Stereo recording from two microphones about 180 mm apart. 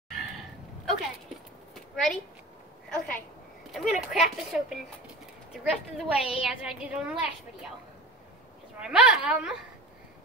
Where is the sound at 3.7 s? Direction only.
Centre (ahead or behind).